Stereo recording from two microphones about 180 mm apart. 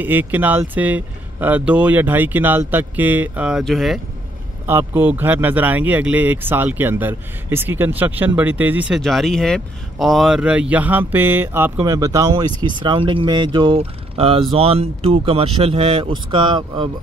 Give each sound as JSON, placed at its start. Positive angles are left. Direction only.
{"t": 0.0, "sound": "speech", "side_deg": -10}
{"t": 4.6, "sound": "speech", "side_deg": -10}